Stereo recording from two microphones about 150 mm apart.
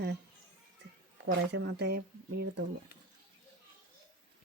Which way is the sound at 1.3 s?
90° right.